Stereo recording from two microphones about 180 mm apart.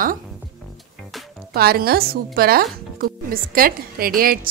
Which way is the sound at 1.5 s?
60° right (ahead or behind).